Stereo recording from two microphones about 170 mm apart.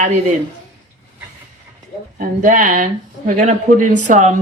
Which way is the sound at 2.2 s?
50° right (ahead or behind).